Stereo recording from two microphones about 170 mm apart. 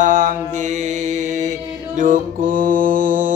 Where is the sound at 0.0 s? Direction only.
50° right (ahead or behind).